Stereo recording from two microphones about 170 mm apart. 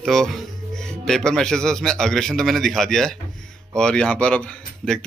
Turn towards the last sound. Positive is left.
turn(degrees=5)  # may be behind; listen again after turning